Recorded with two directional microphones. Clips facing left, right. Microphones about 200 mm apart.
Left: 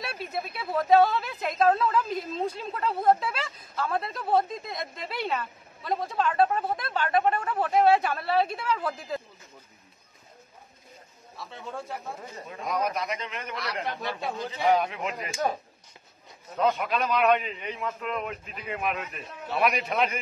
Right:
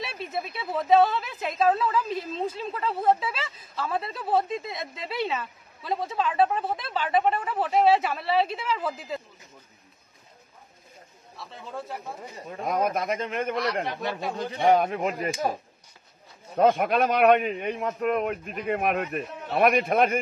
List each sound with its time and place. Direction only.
0.0 s a sound: centre (ahead or behind)
0.7 s a woman's voice: centre (ahead or behind)
11.3 s a woman's voice: centre (ahead or behind)
12.4 s a man's voice: 50° right (ahead or behind)
16.5 s a man's voice: 50° right (ahead or behind)